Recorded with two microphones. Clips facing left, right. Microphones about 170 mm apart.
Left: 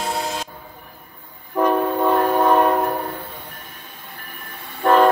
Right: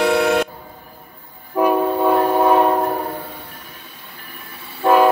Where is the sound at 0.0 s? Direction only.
70° right (ahead or behind).